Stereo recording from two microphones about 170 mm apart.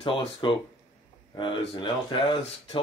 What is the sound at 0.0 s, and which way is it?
Speech, 30° left (ahead or behind).